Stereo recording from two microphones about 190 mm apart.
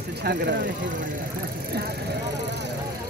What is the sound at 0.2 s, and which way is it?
Speech, 65° right (ahead or behind).